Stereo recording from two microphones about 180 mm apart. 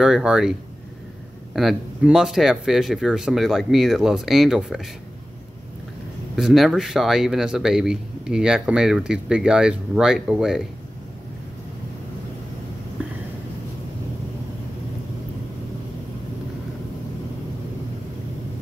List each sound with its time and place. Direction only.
0.0 s a man's voice: 5° right (ahead or behind)
6.3 s a man's voice: centre (ahead or behind)